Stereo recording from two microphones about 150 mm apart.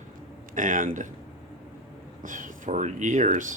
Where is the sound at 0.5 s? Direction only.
60° right (ahead or behind).